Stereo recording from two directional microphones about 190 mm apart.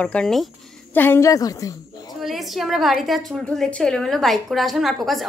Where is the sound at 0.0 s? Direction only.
5° left (ahead or behind).